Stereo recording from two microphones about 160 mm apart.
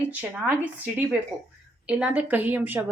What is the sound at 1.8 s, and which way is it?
Speech, 10° right (ahead or behind).